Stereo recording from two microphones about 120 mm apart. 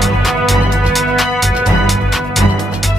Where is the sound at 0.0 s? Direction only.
Centre (ahead or behind).